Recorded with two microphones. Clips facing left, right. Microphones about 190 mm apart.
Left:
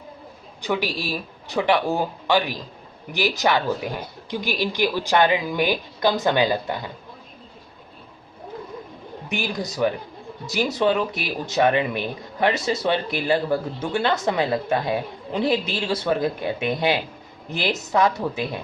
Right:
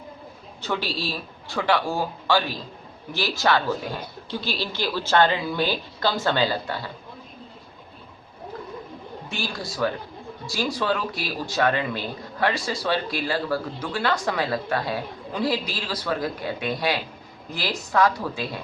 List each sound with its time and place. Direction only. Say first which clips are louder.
0.6 s speech: left 3 dB; 15° left (ahead or behind)
9.3 s speech: left 5 dB; 20° left (ahead or behind)